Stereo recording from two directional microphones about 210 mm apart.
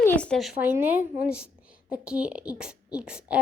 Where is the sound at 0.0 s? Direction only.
5° left (ahead or behind).